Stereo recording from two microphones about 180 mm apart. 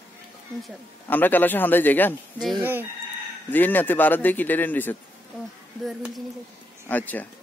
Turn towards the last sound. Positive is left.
turn(degrees=10)  # may be behind; listen again after turning